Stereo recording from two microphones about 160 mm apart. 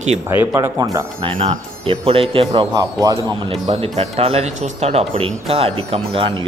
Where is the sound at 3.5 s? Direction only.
40° right (ahead or behind).